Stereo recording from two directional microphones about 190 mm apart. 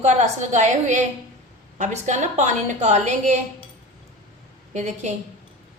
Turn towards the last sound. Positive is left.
turn(degrees=-35)  # may be behind; listen again after turning